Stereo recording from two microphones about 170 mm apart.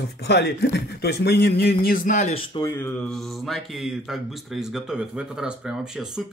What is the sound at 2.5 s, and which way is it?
Speech, 25° left (ahead or behind).